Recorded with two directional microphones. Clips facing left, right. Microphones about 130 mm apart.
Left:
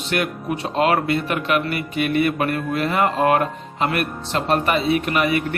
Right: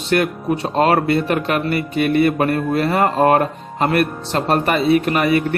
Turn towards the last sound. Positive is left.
turn(degrees=-40)  # may be behind; listen again after turning